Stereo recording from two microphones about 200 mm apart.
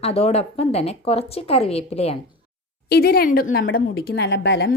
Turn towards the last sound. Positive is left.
turn(degrees=60)  # may be behind; listen again after turning